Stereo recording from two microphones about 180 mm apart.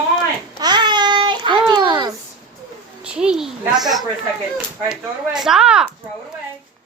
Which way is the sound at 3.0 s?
5° right (ahead or behind).